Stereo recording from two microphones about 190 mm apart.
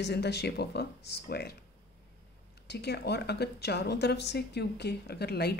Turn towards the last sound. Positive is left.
turn(degrees=55)  # may be behind; listen again after turning